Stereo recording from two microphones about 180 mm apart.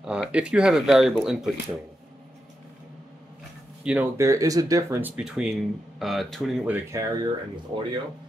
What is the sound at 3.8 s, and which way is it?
Speech, 10° right (ahead or behind).